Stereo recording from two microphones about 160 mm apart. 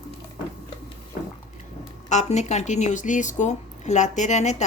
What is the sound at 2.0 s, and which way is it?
Speech, 45° left (ahead or behind).